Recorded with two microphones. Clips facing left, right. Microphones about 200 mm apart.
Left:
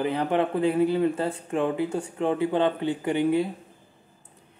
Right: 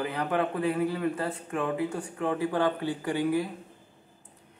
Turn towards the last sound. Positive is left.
turn(degrees=25)  # may be behind; listen again after turning